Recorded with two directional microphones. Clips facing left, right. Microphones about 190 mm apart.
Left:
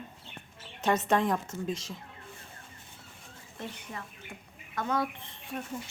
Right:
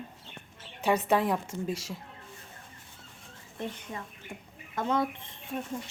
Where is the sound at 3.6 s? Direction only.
20° right (ahead or behind).